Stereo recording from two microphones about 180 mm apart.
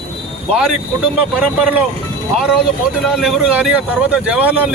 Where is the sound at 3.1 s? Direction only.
5° right (ahead or behind).